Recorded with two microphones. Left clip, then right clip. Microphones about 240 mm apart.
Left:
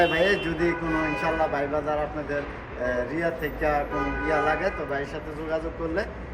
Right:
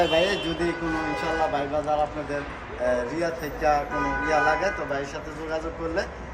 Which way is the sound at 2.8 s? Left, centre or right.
Centre.